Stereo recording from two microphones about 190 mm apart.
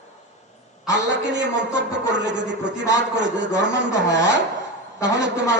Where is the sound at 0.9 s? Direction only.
70° right (ahead or behind).